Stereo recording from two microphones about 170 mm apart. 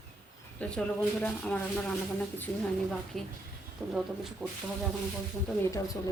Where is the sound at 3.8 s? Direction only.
5° right (ahead or behind).